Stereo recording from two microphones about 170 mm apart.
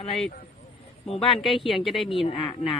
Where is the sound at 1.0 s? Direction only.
35° left (ahead or behind).